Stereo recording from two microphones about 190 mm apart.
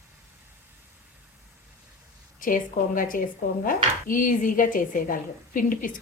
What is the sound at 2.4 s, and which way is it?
A woman's voice, 45° left (ahead or behind).